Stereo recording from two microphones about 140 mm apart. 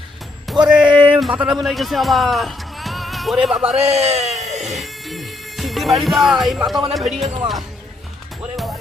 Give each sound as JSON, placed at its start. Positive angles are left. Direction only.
{"t": 0.4, "sound": "speech", "side_deg": -5}
{"t": 3.8, "sound": "speech", "side_deg": -50}
{"t": 4.8, "sound": "music", "side_deg": 0}
{"t": 6.9, "sound": "speech", "side_deg": 0}